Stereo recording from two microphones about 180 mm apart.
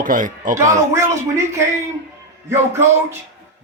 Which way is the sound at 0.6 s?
15° right (ahead or behind).